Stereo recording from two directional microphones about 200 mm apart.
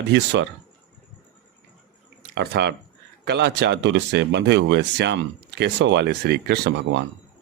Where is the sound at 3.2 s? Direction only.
55° right (ahead or behind).